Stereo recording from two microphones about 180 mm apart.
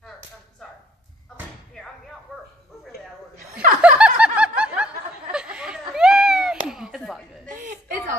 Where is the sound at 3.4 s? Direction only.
50° right (ahead or behind).